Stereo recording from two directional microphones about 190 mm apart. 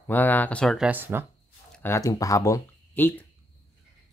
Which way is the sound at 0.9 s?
10° right (ahead or behind).